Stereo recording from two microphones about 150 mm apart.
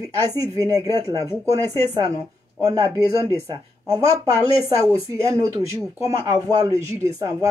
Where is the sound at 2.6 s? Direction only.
25° right (ahead or behind).